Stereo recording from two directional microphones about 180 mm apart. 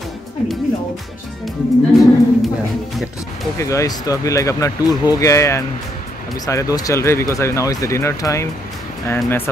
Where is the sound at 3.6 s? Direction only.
15° left (ahead or behind).